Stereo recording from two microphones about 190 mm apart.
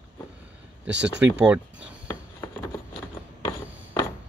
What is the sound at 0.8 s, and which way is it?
Speech, 70° right (ahead or behind).